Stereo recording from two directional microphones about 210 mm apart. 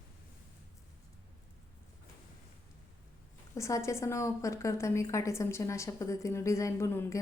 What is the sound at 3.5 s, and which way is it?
A woman's voice, 15° left (ahead or behind).